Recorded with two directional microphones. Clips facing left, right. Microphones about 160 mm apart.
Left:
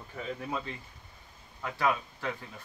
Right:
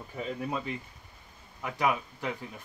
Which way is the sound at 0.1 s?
10° right (ahead or behind).